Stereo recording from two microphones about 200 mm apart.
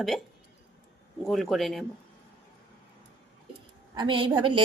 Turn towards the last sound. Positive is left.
turn(degrees=-25)  # may be behind; listen again after turning